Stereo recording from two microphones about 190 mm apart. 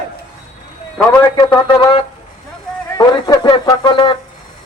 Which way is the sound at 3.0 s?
20° left (ahead or behind).